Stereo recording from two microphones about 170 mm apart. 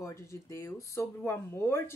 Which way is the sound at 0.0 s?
15° left (ahead or behind).